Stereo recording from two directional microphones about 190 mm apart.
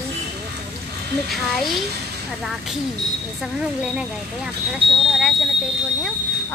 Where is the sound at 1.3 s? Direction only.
Centre (ahead or behind).